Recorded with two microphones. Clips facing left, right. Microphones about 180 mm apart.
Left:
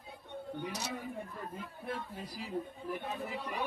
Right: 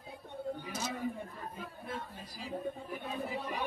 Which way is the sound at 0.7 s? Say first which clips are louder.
Right 1 dB; 70° left (ahead or behind).